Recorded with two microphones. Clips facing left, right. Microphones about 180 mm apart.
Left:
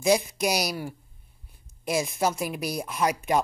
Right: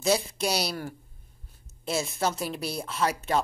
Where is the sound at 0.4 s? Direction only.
10° left (ahead or behind).